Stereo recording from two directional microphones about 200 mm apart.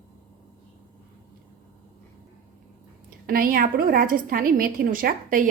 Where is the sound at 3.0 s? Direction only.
45° right (ahead or behind).